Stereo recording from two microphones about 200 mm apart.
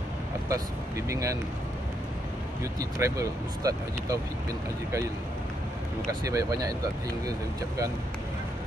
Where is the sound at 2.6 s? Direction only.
15° right (ahead or behind).